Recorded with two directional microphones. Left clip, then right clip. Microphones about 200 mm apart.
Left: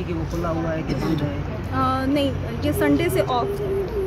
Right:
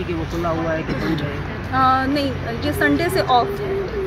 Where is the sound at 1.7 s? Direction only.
5° left (ahead or behind).